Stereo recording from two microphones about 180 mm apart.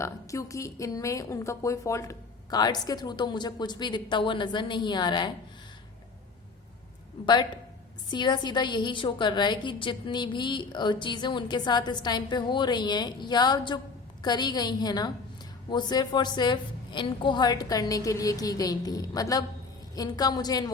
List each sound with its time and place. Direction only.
0.0 s a woman's voice: 15° left (ahead or behind)
7.3 s a woman's voice: 25° left (ahead or behind)